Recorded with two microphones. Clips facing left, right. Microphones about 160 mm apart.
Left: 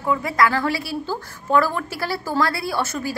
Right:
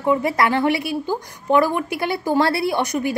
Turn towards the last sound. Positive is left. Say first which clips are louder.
# right 4 dB
turn(degrees=-20)  # may be behind; listen again after turning